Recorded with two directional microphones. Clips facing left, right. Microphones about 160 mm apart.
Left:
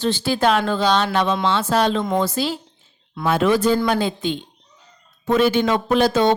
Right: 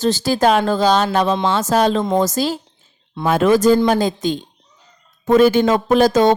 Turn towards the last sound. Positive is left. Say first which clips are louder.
# right 4 dB
turn(degrees=-45)  # may be behind; listen again after turning